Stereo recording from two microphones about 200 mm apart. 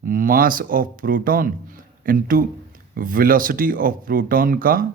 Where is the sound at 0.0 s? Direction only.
45° right (ahead or behind).